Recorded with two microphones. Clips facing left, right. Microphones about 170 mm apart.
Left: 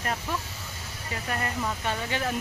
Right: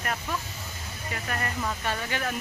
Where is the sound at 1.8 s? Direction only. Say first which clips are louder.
Left 2 dB; 20° left (ahead or behind).